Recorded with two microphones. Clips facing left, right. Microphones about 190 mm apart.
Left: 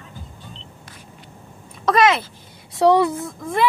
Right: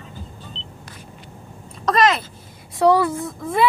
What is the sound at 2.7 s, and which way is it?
Speech, 20° left (ahead or behind).